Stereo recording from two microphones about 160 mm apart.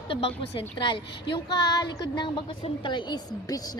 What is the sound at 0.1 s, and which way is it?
A woman's voice, 35° left (ahead or behind).